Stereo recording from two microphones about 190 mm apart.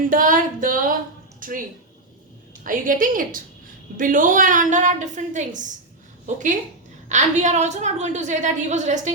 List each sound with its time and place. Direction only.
0.1 s music: 45° right (ahead or behind)
1.4 s a sound: 45° right (ahead or behind)
2.6 s a woman's voice: 45° right (ahead or behind)